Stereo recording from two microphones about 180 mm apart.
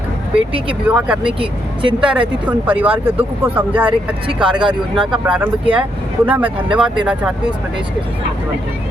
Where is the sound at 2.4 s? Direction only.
10° right (ahead or behind).